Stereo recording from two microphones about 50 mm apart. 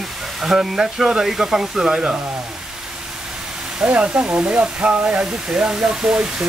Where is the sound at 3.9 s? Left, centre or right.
Right.